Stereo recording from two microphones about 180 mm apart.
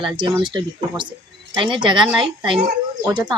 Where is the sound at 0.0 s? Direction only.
25° right (ahead or behind).